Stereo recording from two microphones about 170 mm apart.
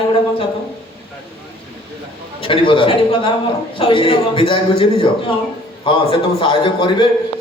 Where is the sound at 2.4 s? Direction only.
30° left (ahead or behind).